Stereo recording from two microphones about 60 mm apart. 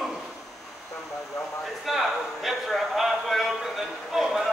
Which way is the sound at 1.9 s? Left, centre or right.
Centre.